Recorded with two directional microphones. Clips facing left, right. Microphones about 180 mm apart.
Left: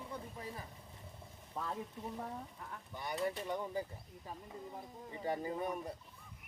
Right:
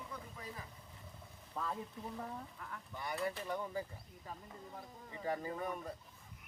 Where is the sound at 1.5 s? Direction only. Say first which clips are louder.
Even; 15° left (ahead or behind).